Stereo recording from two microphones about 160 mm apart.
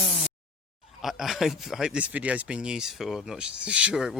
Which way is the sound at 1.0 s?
Centre (ahead or behind).